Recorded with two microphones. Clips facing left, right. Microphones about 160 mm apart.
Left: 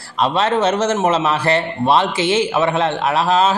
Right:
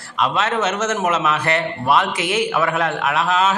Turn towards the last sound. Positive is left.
turn(degrees=30)  # may be behind; listen again after turning